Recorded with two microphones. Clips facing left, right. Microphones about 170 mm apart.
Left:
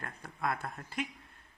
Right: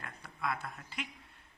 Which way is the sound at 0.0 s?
50° left (ahead or behind).